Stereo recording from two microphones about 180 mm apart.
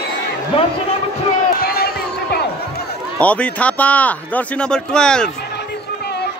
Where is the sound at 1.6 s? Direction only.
60° left (ahead or behind).